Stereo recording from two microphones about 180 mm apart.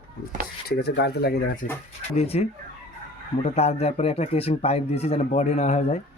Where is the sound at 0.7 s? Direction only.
65° left (ahead or behind).